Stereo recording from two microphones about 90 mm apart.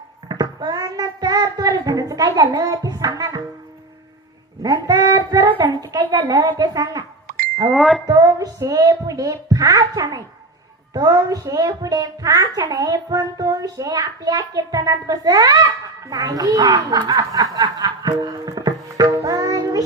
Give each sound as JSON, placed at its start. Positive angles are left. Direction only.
{"t": 0.3, "sound": "child singing", "side_deg": -50}
{"t": 4.6, "sound": "a child's voice", "side_deg": -45}
{"t": 7.7, "sound": "speech", "side_deg": 0}
{"t": 8.0, "sound": "music", "side_deg": -40}
{"t": 10.9, "sound": "a child's voice", "side_deg": -45}
{"t": 19.2, "sound": "music", "side_deg": -45}